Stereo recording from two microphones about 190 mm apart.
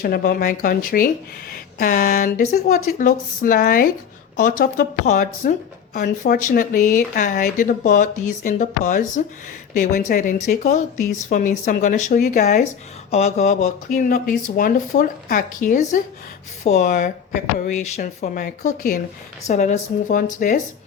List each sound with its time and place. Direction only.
0.0 s speech: 55° left (ahead or behind)